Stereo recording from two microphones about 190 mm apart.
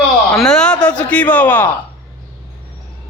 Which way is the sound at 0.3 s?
5° left (ahead or behind).